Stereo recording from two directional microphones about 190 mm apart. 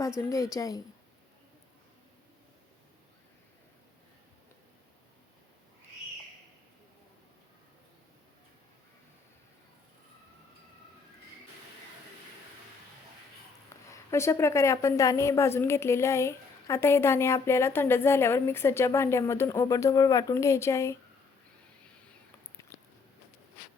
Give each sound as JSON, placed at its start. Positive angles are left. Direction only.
{"t": 0.2, "sound": "a woman's voice", "side_deg": 15}
{"t": 13.9, "sound": "a woman's voice", "side_deg": 15}